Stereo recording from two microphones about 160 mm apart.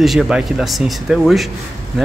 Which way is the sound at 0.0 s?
Centre (ahead or behind).